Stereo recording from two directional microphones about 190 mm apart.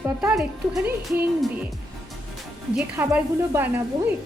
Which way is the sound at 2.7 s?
5° right (ahead or behind).